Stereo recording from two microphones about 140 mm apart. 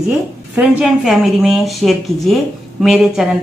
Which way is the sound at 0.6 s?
5° right (ahead or behind).